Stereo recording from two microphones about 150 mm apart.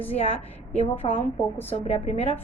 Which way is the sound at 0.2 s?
40° left (ahead or behind).